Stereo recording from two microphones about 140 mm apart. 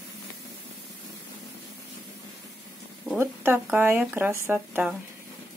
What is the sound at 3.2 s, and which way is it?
Speech, 15° right (ahead or behind).